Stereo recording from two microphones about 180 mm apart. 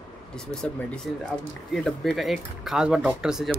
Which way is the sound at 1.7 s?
Centre (ahead or behind).